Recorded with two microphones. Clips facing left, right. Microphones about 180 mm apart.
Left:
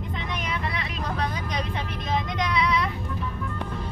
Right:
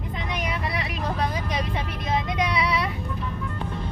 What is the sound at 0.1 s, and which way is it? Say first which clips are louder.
Vehicle: right 3 dB; 10° right (ahead or behind).